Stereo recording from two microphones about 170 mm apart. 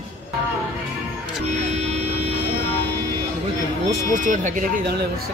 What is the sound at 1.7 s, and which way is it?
Music, 40° right (ahead or behind).